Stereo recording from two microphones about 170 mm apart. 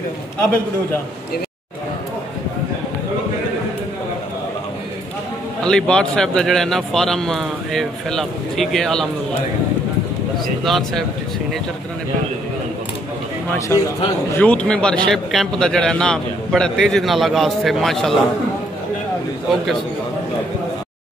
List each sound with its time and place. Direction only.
5.6 s a man's voice: 5° left (ahead or behind)
10.6 s a man's voice: centre (ahead or behind)
13.6 s a man's voice: 20° left (ahead or behind); by 18.2 s centre (ahead or behind)